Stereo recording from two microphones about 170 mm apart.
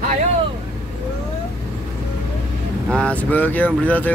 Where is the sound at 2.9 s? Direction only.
5° left (ahead or behind).